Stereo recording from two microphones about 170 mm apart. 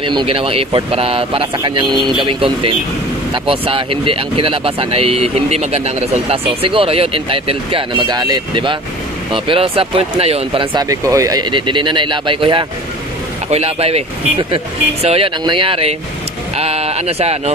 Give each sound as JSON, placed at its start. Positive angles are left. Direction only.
{"t": 0.0, "sound": "speech", "side_deg": -30}